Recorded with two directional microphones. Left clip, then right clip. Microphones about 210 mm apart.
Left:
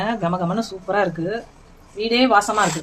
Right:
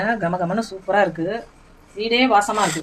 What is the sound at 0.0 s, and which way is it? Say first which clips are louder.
A woman's voice: right 1 dB; 15° left (ahead or behind).